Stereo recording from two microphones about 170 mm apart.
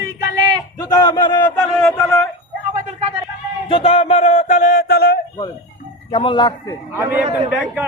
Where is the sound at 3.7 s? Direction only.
30° left (ahead or behind).